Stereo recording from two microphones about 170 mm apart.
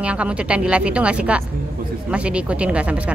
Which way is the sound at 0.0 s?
5° right (ahead or behind).